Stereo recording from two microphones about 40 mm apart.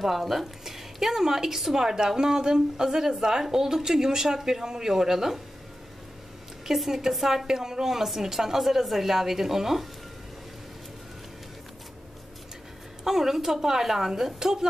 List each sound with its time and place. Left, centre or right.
0.0 s a woman's voice: centre
6.6 s a woman's voice: centre
13.0 s a woman's voice: centre